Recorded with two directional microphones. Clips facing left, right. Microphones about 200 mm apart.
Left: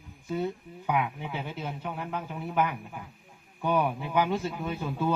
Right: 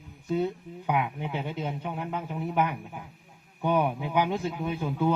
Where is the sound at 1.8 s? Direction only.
10° right (ahead or behind).